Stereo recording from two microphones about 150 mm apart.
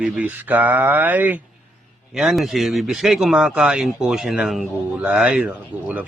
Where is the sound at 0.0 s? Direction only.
10° right (ahead or behind).